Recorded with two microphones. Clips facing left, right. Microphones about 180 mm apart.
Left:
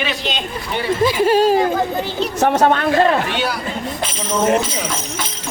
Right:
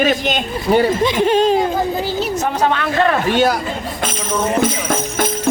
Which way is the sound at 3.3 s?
45° right (ahead or behind).